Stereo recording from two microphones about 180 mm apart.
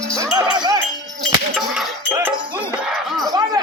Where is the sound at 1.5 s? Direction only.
Centre (ahead or behind).